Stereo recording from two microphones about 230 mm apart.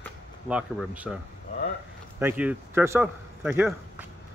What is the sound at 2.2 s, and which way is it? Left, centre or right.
Speech, centre.